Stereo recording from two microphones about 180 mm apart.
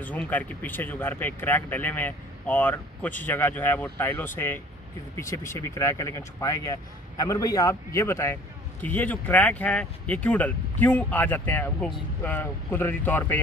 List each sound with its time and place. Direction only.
0.0 s speech: 10° left (ahead or behind)